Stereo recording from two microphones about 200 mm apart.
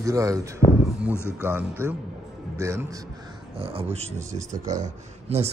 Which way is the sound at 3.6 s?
30° right (ahead or behind).